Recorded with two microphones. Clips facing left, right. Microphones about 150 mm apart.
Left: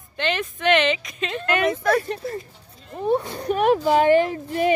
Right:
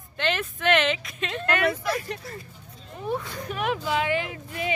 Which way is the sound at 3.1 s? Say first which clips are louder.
Left 8 dB; 30° left (ahead or behind).